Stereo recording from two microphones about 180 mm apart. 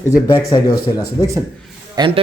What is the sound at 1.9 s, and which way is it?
Speech, 30° right (ahead or behind).